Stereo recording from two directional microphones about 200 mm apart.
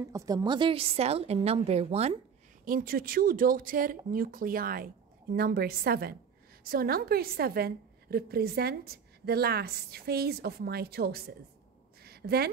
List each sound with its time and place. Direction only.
0.1 s a woman's voice: 15° right (ahead or behind)
2.6 s a woman's voice: 45° right (ahead or behind)
12.0 s a sound: 50° right (ahead or behind)